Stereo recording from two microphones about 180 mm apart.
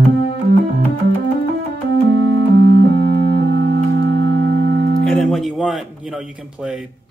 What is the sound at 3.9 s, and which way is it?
Music, 70° right (ahead or behind).